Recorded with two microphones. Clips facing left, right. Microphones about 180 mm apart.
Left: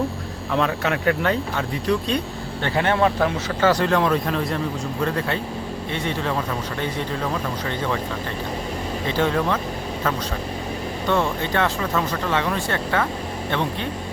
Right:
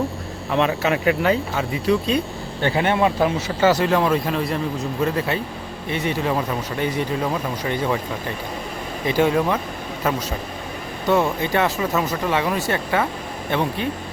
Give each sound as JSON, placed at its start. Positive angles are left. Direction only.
{"t": 0.5, "sound": "speech", "side_deg": -5}
{"t": 9.0, "sound": "speech", "side_deg": -10}
{"t": 11.1, "sound": "speech", "side_deg": -10}